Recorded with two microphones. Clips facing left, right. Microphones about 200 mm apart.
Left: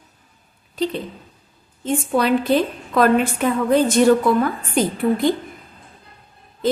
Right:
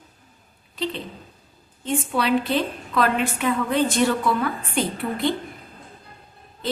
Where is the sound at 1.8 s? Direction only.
45° left (ahead or behind).